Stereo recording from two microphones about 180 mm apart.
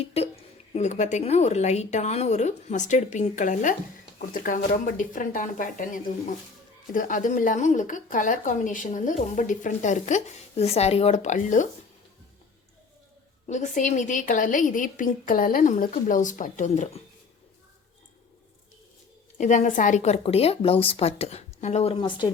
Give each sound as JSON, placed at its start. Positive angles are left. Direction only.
{"t": 0.0, "sound": "a woman's voice", "side_deg": 35}
{"t": 13.5, "sound": "speech", "side_deg": 40}
{"t": 19.4, "sound": "a woman's voice", "side_deg": 45}